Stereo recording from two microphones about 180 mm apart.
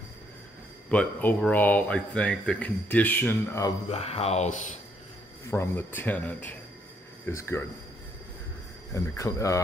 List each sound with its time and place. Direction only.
0.8 s speech: 5° left (ahead or behind)
3.9 s a sound: 35° left (ahead or behind)
5.5 s speech: 15° left (ahead or behind)
8.9 s speech: 15° left (ahead or behind)